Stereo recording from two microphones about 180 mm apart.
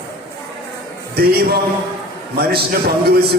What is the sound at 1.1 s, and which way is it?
A man's voice, 60° right (ahead or behind).